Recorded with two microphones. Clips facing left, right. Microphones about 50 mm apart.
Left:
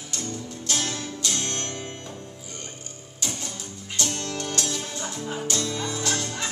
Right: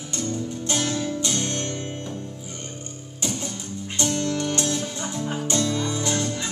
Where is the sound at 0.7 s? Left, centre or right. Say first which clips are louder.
Right 4 dB; centre.